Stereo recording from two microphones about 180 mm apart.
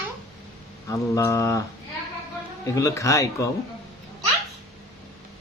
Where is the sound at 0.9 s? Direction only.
15° left (ahead or behind).